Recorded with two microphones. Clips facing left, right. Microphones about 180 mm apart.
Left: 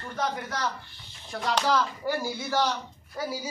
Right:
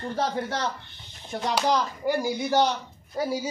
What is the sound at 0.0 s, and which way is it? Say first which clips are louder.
Speech: right 4 dB; 30° right (ahead or behind).